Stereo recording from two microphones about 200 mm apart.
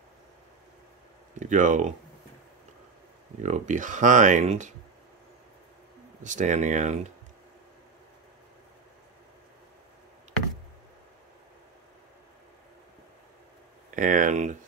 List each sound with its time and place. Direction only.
1.4 s speech: 40° right (ahead or behind)
3.4 s speech: 40° right (ahead or behind)
6.2 s speech: 40° right (ahead or behind)
13.8 s speech: 40° right (ahead or behind)